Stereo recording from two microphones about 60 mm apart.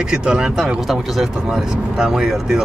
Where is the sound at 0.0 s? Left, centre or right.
Centre.